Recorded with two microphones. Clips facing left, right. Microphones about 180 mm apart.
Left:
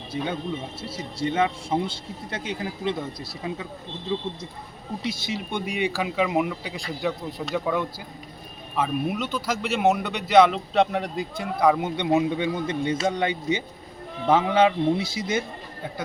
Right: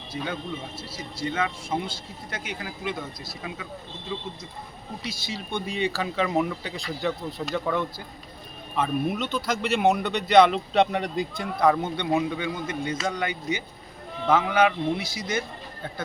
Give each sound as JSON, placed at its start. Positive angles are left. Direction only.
{"t": 0.1, "sound": "speech", "side_deg": 25}
{"t": 5.0, "sound": "speech", "side_deg": 25}